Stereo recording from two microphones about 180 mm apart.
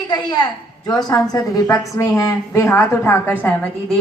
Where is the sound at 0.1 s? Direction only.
20° left (ahead or behind).